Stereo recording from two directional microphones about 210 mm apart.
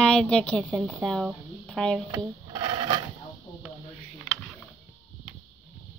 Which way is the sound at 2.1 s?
20° right (ahead or behind).